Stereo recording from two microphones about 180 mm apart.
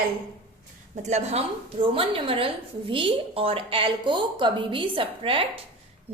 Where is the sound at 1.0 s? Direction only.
35° right (ahead or behind).